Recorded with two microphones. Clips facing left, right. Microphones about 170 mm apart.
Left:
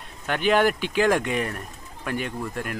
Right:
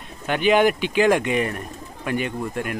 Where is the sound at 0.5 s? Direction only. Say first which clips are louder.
Right 3 dB; 15° right (ahead or behind).